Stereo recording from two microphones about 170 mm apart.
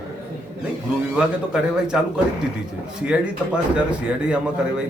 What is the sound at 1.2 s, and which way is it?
Speech, 5° right (ahead or behind).